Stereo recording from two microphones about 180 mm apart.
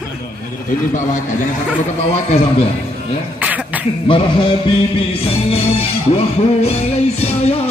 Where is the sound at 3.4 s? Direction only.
10° right (ahead or behind).